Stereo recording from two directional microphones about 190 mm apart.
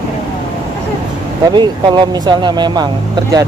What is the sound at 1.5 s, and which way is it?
Speech, 25° right (ahead or behind).